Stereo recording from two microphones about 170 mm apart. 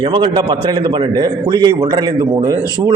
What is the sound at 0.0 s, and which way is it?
A man's voice, 30° right (ahead or behind).